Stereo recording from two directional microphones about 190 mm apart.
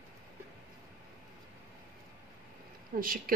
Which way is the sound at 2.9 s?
50° right (ahead or behind).